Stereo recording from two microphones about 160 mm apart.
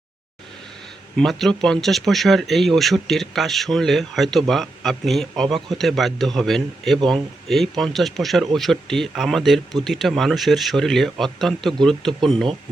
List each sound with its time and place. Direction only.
1.1 s speech: centre (ahead or behind)